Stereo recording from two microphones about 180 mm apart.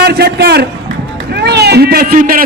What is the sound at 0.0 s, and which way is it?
A man's voice, 65° right (ahead or behind).